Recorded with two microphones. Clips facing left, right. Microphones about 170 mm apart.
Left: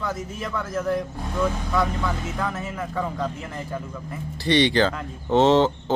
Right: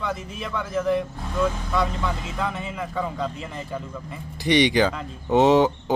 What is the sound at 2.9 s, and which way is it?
Speech, 5° right (ahead or behind).